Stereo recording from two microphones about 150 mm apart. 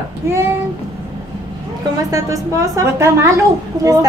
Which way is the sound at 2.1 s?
20° right (ahead or behind).